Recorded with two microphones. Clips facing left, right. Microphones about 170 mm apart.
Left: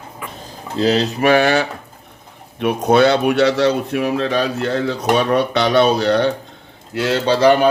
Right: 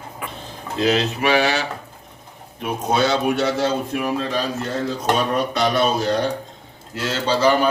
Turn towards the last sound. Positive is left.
turn(degrees=65)  # may be behind; listen again after turning